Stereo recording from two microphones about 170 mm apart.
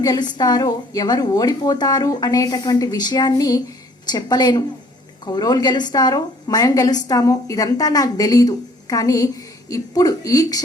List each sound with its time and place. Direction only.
0.0 s a woman's voice: 25° left (ahead or behind)